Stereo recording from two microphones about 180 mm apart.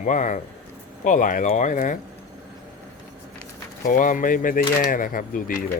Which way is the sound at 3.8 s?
45° left (ahead or behind).